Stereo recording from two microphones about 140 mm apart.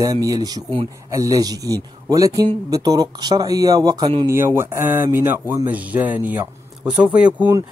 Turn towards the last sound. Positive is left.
turn(degrees=-10)  # may be behind; listen again after turning